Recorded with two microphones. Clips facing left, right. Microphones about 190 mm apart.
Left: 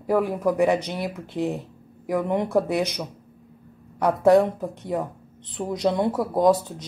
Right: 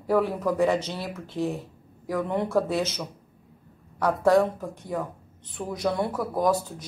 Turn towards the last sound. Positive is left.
turn(degrees=20)  # may be behind; listen again after turning